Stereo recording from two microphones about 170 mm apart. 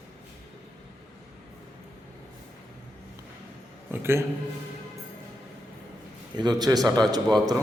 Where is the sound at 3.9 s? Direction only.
15° right (ahead or behind).